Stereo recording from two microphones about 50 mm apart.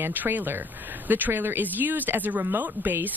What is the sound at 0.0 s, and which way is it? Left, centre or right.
Speech, right.